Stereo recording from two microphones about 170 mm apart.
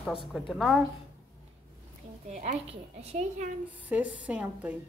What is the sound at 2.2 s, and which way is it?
A woman's voice, 45° right (ahead or behind).